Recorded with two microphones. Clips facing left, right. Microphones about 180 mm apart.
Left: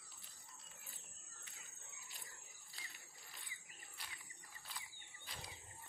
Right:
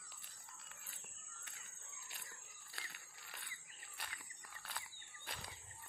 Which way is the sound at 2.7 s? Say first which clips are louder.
Right 4 dB; 65° right (ahead or behind).